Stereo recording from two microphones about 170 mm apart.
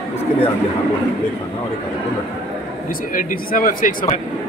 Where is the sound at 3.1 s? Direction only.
55° left (ahead or behind).